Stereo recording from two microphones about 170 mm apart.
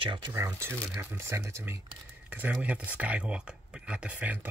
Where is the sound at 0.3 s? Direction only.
15° right (ahead or behind).